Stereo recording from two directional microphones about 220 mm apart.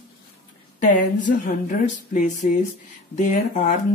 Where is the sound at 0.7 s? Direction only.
35° left (ahead or behind).